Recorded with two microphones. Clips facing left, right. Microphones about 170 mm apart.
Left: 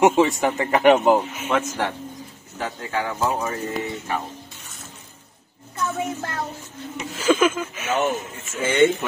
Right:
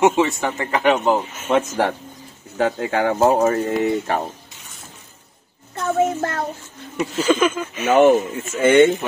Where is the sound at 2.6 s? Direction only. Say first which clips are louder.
Right 8 dB; 65° right (ahead or behind).